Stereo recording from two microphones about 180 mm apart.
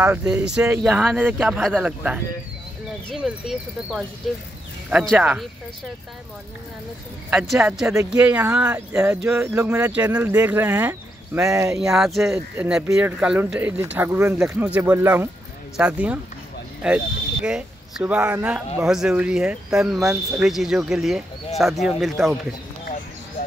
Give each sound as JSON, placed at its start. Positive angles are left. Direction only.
{"t": 0.0, "sound": "speech", "side_deg": -15}
{"t": 7.2, "sound": "speech", "side_deg": -5}
{"t": 11.7, "sound": "speech", "side_deg": -5}